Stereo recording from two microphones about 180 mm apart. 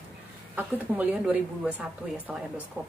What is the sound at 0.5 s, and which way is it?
A woman's voice, 10° right (ahead or behind).